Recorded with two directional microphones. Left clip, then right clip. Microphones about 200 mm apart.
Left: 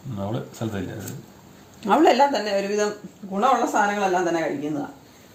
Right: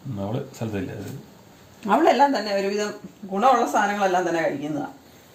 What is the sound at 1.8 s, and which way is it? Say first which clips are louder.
Speech: left 1 dB; 40° left (ahead or behind).